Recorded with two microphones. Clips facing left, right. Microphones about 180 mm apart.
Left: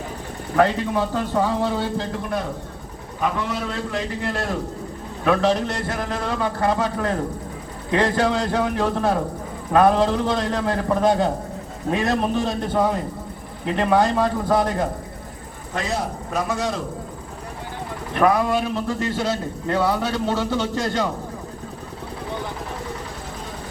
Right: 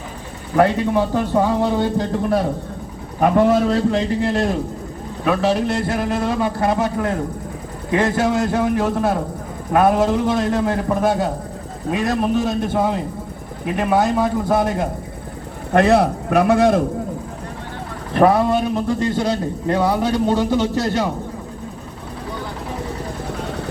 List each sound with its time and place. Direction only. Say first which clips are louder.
0.5 s a man's voice: right 3 dB; 10° right (ahead or behind)
3.2 s speech: right 10 dB; 50° right (ahead or behind)
3.8 s a man's voice: right 8 dB; 25° right (ahead or behind)
5.2 s a man's voice: right 1 dB; 5° right (ahead or behind)
15.7 s speech: right 12 dB; 65° right (ahead or behind)
18.1 s a man's voice: right 4 dB; 30° right (ahead or behind); by 21.1 s 10° right (ahead or behind)